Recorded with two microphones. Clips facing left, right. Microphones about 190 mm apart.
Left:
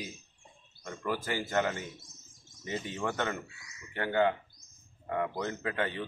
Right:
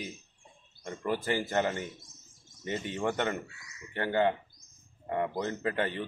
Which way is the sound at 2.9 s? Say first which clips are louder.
Right 3 dB; 20° right (ahead or behind).